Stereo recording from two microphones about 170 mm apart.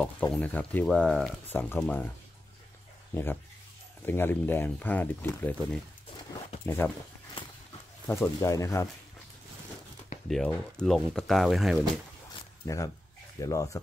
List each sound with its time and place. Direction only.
0.0 s speech: 10° left (ahead or behind)
3.1 s speech: 15° left (ahead or behind)
8.1 s speech: 15° left (ahead or behind)
10.2 s speech: 5° left (ahead or behind)
12.6 s speech: 20° left (ahead or behind)